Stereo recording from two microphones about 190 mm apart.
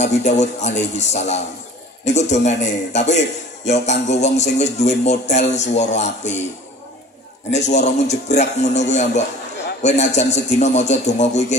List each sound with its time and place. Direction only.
0.0 s speech: 35° left (ahead or behind)
7.5 s speech: 35° left (ahead or behind)